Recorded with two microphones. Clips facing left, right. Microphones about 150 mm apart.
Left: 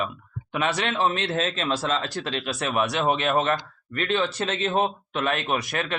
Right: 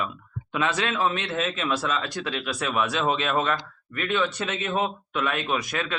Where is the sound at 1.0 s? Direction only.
35° left (ahead or behind).